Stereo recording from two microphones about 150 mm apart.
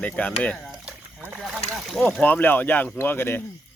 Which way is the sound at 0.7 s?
5° right (ahead or behind).